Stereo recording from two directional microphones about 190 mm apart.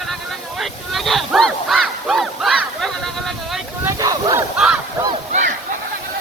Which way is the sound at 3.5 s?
10° right (ahead or behind).